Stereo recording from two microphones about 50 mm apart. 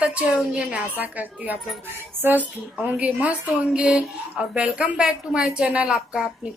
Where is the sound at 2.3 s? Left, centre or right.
Right.